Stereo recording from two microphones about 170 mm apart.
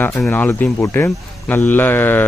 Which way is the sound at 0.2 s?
10° left (ahead or behind).